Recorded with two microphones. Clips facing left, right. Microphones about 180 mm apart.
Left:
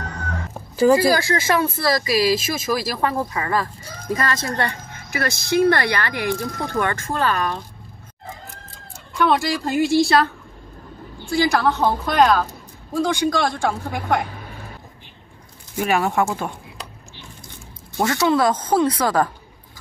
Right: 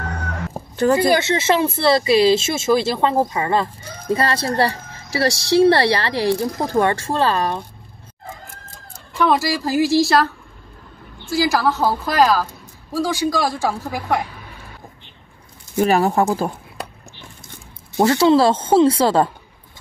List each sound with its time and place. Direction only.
0.7 s speech: 5° left (ahead or behind)
1.1 s a woman's voice: 25° right (ahead or behind)
9.1 s speech: 5° right (ahead or behind)
15.8 s a woman's voice: 35° right (ahead or behind)
18.0 s speech: 30° right (ahead or behind)